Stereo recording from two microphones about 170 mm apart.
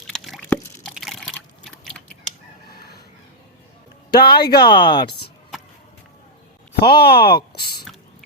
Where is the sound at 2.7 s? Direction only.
70° left (ahead or behind).